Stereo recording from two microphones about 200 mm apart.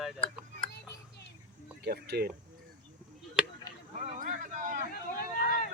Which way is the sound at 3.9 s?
40° right (ahead or behind).